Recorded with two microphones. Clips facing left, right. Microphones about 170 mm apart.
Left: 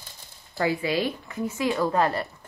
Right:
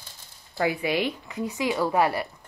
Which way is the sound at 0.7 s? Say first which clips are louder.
Left 1 dB; 20° right (ahead or behind).